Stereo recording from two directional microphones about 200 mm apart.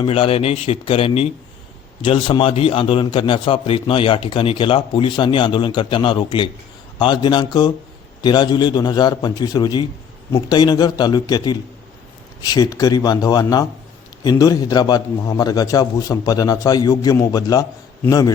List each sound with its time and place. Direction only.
0.0 s a man's voice: 25° left (ahead or behind)